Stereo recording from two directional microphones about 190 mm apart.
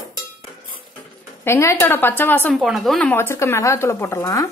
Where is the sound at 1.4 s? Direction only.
15° left (ahead or behind).